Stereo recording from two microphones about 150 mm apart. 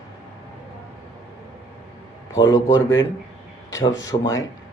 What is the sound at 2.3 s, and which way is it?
A man's voice, 25° left (ahead or behind).